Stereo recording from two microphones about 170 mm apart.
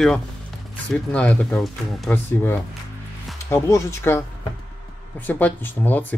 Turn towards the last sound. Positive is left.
turn(degrees=10)  # may be behind; listen again after turning